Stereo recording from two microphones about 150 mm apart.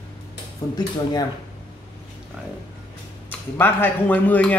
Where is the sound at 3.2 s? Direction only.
15° left (ahead or behind).